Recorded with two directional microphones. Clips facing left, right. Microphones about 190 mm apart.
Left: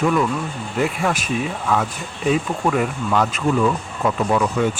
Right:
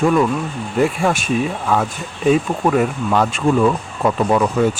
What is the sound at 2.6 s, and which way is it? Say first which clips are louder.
Speech: right 4 dB; 25° right (ahead or behind).